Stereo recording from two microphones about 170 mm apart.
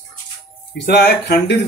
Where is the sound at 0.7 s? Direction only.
80° left.